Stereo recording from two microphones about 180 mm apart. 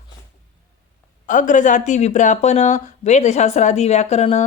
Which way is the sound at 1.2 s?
45° left (ahead or behind).